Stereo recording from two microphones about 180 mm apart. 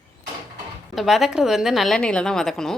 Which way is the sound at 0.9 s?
Centre (ahead or behind).